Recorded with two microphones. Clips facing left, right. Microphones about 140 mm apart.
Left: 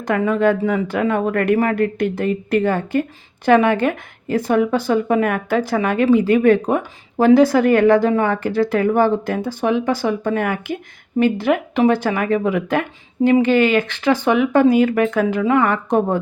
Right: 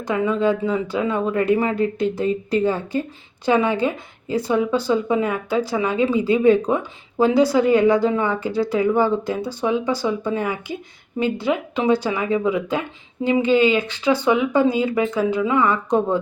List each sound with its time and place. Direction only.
0.0 s speech: 60° left (ahead or behind)